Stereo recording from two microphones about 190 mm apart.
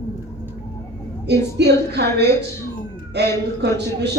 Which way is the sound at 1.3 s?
60° right (ahead or behind).